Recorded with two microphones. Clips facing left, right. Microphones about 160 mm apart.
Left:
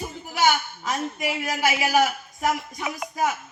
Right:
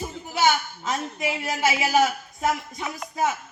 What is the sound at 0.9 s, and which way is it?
A man's voice, 25° right (ahead or behind).